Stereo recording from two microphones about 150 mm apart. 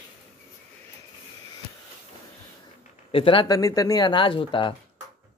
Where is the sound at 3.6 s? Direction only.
20° left (ahead or behind).